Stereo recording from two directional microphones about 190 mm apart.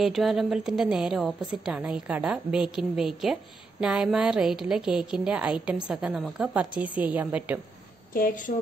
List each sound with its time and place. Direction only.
0.0 s a woman's voice: centre (ahead or behind)
8.1 s a woman's voice: 45° left (ahead or behind)